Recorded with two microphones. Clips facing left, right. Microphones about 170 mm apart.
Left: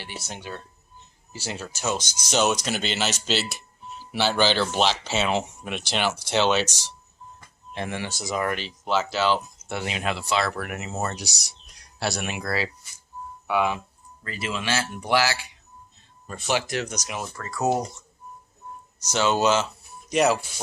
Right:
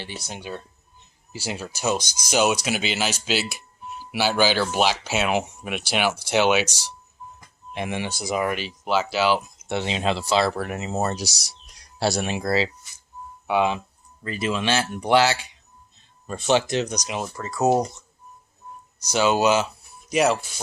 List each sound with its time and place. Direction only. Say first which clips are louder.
0.0 s speech: right 2 dB; 15° right (ahead or behind); by 11.2 s 30° right (ahead or behind)
11.2 s speech: right 5 dB; 90° right
11.9 s speech: right 5 dB; 30° right (ahead or behind)
16.5 s speech: right 5 dB; 25° right (ahead or behind)
18.9 s speech: right 2 dB; 10° right (ahead or behind)
20.1 s speech: even; centre (ahead or behind)